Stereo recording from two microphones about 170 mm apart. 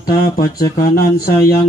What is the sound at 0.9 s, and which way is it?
Speech, 60° left (ahead or behind).